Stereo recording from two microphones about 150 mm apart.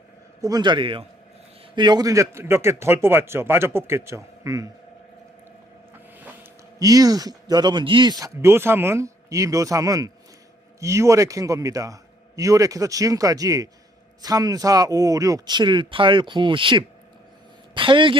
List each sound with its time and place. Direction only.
0.4 s a man's voice: 30° right (ahead or behind)
6.7 s speech: 25° right (ahead or behind)
8.2 s a man's voice: 20° right (ahead or behind)